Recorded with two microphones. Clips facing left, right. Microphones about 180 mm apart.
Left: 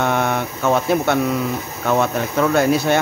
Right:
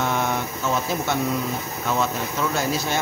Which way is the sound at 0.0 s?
60° left (ahead or behind).